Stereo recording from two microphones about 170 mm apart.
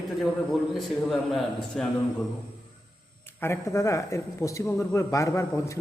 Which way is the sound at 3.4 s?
15° left (ahead or behind).